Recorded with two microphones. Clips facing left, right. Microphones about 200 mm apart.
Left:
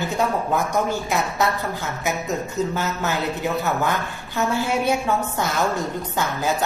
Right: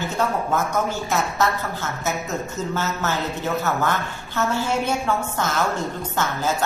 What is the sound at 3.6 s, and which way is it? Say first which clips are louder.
A woman's voice: even; 15° left (ahead or behind).